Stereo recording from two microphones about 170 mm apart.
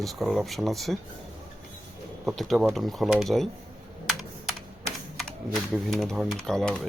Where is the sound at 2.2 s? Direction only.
Centre (ahead or behind).